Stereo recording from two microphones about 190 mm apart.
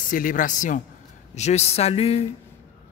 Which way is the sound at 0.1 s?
45° left (ahead or behind).